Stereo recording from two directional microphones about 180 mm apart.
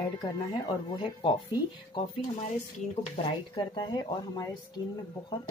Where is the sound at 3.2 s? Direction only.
30° left (ahead or behind).